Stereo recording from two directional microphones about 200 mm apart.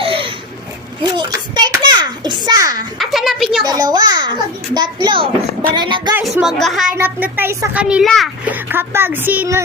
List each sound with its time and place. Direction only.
0.0 s a sound: 25° right (ahead or behind)
1.0 s a child's voice: 20° right (ahead or behind)
3.0 s speech: centre (ahead or behind)
3.6 s a child's voice: 20° right (ahead or behind)
6.1 s a child's voice: centre (ahead or behind)